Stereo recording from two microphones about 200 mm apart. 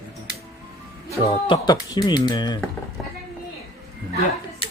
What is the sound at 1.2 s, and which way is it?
Speech, 30° left (ahead or behind).